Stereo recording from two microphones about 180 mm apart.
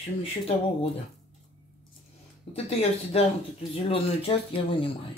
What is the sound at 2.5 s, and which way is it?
Speech, 35° left (ahead or behind).